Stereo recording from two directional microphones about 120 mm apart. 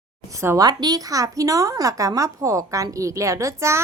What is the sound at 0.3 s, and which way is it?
A woman's voice, 25° right (ahead or behind).